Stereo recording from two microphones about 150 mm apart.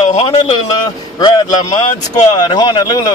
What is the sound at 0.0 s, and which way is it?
Speech, 45° left (ahead or behind).